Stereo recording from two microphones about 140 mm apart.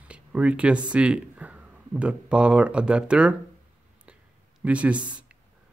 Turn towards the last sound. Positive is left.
turn(degrees=-10)  # may be behind; listen again after turning